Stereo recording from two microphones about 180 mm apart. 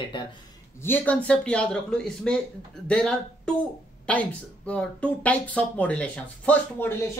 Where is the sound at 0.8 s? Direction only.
10° left (ahead or behind).